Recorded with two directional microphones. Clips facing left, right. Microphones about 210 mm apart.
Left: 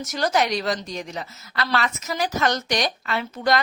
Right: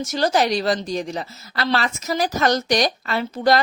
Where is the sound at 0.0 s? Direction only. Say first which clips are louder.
Right 3 dB; 30° right (ahead or behind).